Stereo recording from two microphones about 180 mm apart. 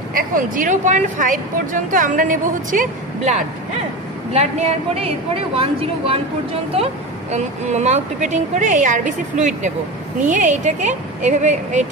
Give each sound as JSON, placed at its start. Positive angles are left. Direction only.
{"t": 0.1, "sound": "speech", "side_deg": -50}
{"t": 4.3, "sound": "speech", "side_deg": -35}